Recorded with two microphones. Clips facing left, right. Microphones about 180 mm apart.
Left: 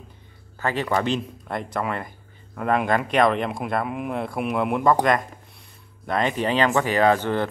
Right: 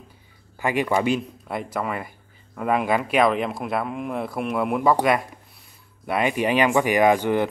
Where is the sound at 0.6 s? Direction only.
15° right (ahead or behind).